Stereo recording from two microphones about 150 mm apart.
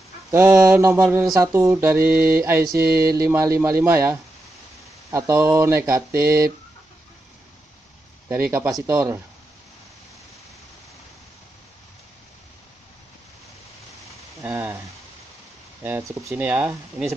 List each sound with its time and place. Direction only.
0.3 s speech: 15° right (ahead or behind)
8.3 s speech: 15° right (ahead or behind)
14.4 s a sound: 15° right (ahead or behind)
15.8 s speech: 15° right (ahead or behind)